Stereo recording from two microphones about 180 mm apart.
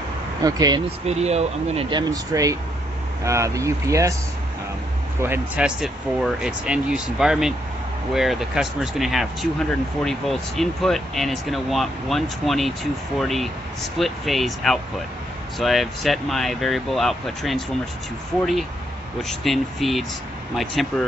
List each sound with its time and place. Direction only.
0.4 s speech: 20° right (ahead or behind)
1.0 s speech: 35° right (ahead or behind); by 4.1 s 15° right (ahead or behind)
5.2 s speech: 10° right (ahead or behind)